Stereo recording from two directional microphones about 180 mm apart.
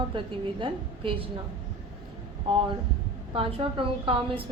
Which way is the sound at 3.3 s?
30° right (ahead or behind).